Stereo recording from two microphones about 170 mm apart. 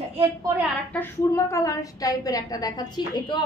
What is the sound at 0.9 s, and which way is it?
A woman's voice, 15° left (ahead or behind).